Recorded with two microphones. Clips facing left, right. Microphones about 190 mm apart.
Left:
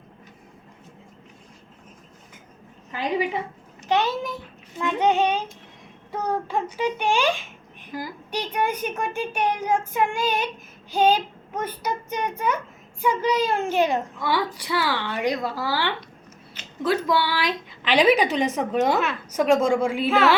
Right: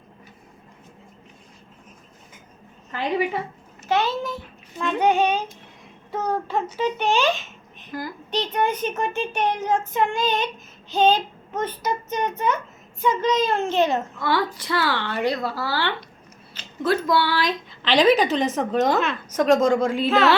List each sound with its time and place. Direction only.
2.9 s a child's voice: 15° left (ahead or behind)
6.5 s a child's voice: 10° left (ahead or behind)